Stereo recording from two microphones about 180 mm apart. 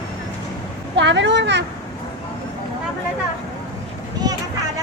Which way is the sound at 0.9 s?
80° right.